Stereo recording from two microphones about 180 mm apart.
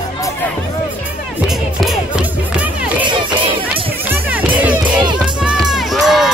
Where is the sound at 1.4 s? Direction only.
Centre (ahead or behind).